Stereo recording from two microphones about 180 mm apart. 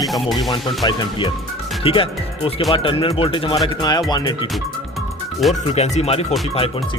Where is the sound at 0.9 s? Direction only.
25° left (ahead or behind).